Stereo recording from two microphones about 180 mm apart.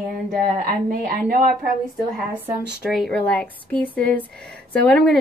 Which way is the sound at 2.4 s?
5° right (ahead or behind).